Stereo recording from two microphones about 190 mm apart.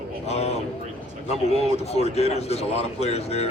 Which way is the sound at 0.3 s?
35° left (ahead or behind).